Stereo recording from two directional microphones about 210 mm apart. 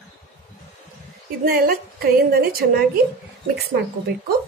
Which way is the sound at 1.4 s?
45° right (ahead or behind).